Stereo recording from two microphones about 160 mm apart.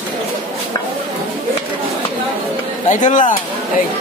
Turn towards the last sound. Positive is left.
turn(degrees=50)  # may be behind; listen again after turning